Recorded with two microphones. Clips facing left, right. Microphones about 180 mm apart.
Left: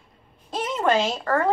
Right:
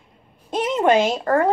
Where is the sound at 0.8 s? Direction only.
20° right (ahead or behind).